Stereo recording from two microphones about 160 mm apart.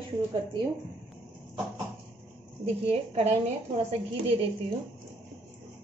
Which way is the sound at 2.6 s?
40° right (ahead or behind).